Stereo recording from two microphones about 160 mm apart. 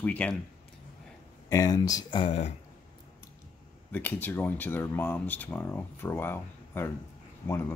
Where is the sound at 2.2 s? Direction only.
45° left (ahead or behind).